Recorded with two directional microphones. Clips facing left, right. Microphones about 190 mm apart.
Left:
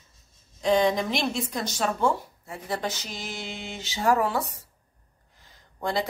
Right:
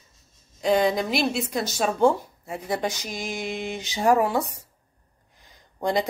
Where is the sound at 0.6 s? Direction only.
5° right (ahead or behind).